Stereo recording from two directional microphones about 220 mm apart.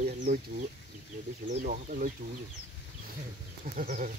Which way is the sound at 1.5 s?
35° right (ahead or behind).